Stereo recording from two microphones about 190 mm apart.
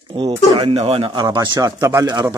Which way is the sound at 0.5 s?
30° right (ahead or behind).